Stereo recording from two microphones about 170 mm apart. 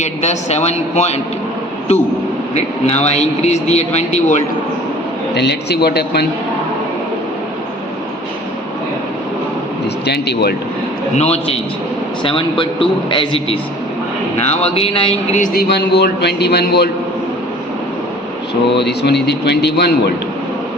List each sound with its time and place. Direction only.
0.0 s a man's voice: 40° left (ahead or behind)
2.8 s a man's voice: 40° left (ahead or behind)
5.3 s a man's voice: 80° left
10.1 s a man's voice: 75° left (ahead or behind)
11.2 s a man's voice: 40° left (ahead or behind)
15.4 s a man's voice: 65° left (ahead or behind)
18.7 s a man's voice: 80° left